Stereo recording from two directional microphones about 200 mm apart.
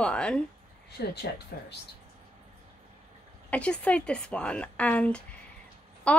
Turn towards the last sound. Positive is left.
turn(degrees=5)  # may be behind; listen again after turning